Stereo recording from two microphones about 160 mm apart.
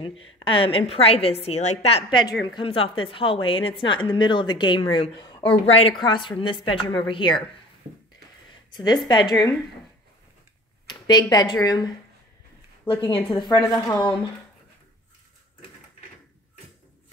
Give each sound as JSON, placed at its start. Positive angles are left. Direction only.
{"t": 0.0, "sound": "a woman's voice", "side_deg": 30}
{"t": 8.7, "sound": "a woman's voice", "side_deg": 25}
{"t": 10.9, "sound": "speech", "side_deg": 25}
{"t": 13.1, "sound": "a woman's voice", "side_deg": 30}